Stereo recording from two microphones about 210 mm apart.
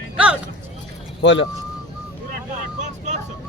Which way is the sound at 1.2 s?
55° left (ahead or behind).